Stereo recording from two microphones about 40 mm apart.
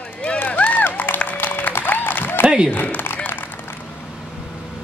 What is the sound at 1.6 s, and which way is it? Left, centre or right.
Applause, left.